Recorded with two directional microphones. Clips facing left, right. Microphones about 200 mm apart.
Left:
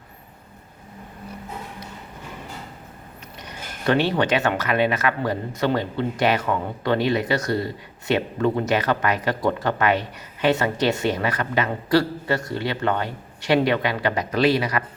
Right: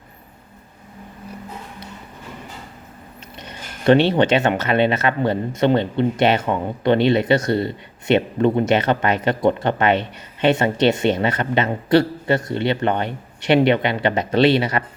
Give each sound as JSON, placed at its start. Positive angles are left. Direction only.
{"t": 3.4, "sound": "speech", "side_deg": -25}